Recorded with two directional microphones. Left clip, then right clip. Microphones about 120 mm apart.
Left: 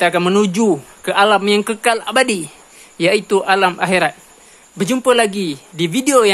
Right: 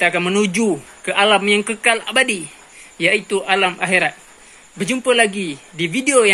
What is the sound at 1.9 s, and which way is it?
Speech, 40° left (ahead or behind).